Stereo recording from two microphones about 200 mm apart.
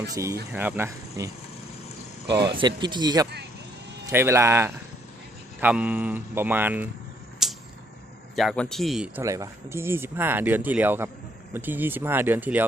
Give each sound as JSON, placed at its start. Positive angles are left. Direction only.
{"t": 0.1, "sound": "speech", "side_deg": -15}
{"t": 2.5, "sound": "speech", "side_deg": -25}
{"t": 7.4, "sound": "a sound", "side_deg": 0}
{"t": 8.4, "sound": "speech", "side_deg": 0}
{"t": 9.2, "sound": "speech", "side_deg": -15}